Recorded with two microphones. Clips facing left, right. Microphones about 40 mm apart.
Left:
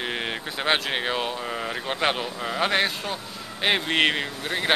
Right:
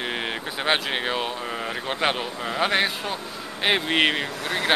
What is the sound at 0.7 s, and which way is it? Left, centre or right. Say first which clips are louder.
Speech: even; centre.